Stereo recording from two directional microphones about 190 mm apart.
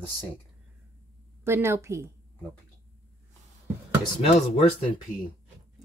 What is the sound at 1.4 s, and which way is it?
Speech, 15° right (ahead or behind).